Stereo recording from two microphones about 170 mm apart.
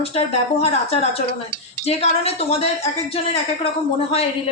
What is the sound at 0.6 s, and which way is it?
A woman's voice, 35° left (ahead or behind).